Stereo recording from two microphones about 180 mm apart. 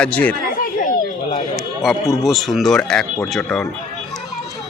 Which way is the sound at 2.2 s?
Centre (ahead or behind).